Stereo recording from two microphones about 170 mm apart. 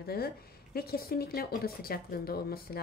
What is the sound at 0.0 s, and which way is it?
A woman's voice, 65° left (ahead or behind).